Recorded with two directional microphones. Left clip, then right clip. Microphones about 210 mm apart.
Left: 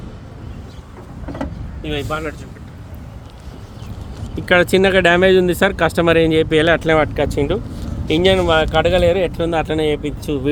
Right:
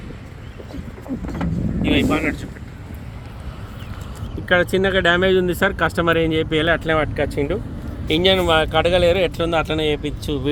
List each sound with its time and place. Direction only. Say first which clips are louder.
1.8 s speech: right 4 dB; 40° left (ahead or behind)
4.4 s speech: left 4 dB; 30° left (ahead or behind); by 10.5 s 5° left (ahead or behind)